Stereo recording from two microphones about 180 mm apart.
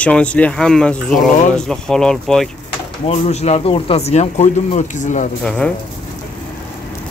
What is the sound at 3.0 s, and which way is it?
Speech, 35° left (ahead or behind).